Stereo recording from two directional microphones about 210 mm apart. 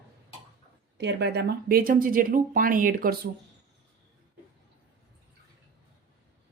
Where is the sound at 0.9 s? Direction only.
55° right (ahead or behind).